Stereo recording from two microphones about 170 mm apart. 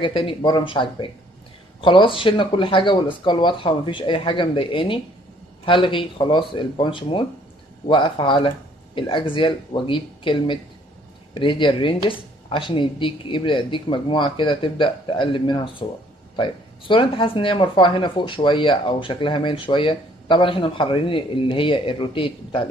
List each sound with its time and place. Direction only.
0.0 s speech: 30° left (ahead or behind)